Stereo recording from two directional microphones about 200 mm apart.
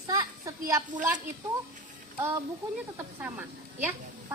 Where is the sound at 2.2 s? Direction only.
10° right (ahead or behind).